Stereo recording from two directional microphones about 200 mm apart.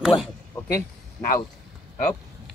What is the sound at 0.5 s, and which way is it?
Speech, 15° left (ahead or behind).